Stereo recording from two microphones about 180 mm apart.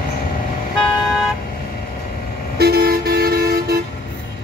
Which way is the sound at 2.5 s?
60° right (ahead or behind).